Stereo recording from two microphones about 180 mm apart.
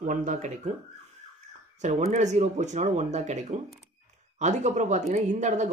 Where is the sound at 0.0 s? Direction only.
45° right (ahead or behind).